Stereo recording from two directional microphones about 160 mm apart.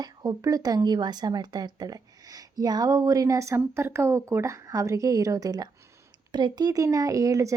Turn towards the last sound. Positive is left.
turn(degrees=-20)  # may be behind; listen again after turning